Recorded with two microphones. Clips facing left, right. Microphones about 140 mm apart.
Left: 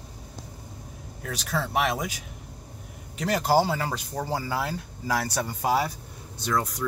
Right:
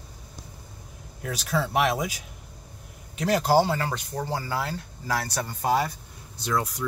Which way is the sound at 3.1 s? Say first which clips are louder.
Right 1 dB; centre (ahead or behind).